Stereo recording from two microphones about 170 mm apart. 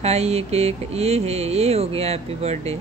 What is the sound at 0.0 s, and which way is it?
Speech, 40° right (ahead or behind).